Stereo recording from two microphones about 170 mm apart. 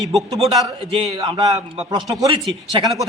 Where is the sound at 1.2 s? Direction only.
25° right (ahead or behind).